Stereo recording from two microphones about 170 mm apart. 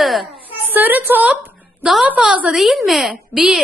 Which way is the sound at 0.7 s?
10° right (ahead or behind).